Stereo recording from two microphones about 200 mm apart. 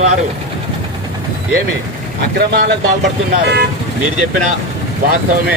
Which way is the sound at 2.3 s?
55° right (ahead or behind).